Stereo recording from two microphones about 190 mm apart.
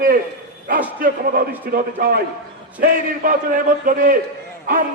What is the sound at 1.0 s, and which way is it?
A man's voice, 50° right (ahead or behind).